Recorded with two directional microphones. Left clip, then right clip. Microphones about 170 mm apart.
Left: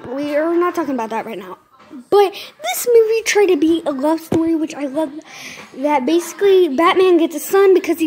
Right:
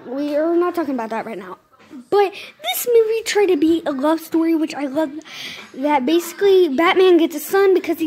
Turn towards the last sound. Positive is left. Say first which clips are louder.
# left 3 dB
turn(degrees=15)  # may be behind; listen again after turning